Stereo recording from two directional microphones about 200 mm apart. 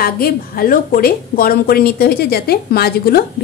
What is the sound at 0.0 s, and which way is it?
A woman's voice, 45° left (ahead or behind).